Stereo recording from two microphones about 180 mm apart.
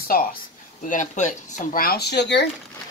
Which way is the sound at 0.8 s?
45° left (ahead or behind).